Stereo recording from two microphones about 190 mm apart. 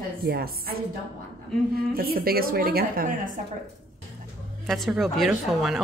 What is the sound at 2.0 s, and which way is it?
A woman's voice, 50° right (ahead or behind).